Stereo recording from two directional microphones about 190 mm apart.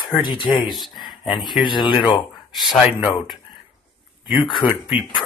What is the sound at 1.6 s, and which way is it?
Speech, 25° left (ahead or behind).